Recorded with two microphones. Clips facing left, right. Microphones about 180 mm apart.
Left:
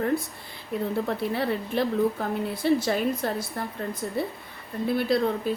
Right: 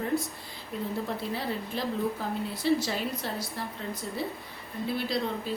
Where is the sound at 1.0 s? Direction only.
60° left (ahead or behind).